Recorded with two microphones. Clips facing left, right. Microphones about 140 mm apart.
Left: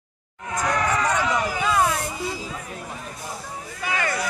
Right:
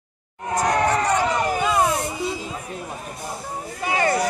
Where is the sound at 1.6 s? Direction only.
20° right (ahead or behind).